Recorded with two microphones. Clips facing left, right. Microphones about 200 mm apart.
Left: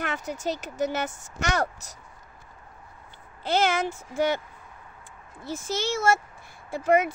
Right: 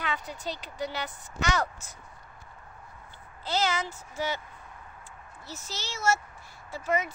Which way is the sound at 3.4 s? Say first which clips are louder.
Left 5 dB; 55° left (ahead or behind).